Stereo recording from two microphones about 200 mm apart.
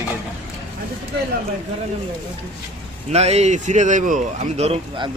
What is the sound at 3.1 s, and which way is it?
Speech, 30° right (ahead or behind).